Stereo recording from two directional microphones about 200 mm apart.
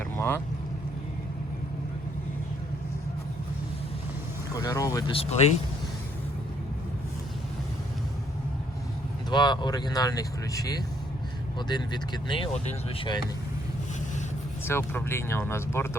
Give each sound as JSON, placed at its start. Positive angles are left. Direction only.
{"t": 0.0, "sound": "vehicle", "side_deg": 10}
{"t": 4.5, "sound": "speech", "side_deg": 20}
{"t": 5.1, "sound": "speech", "side_deg": 30}
{"t": 9.3, "sound": "speech", "side_deg": 20}
{"t": 14.6, "sound": "speech", "side_deg": 10}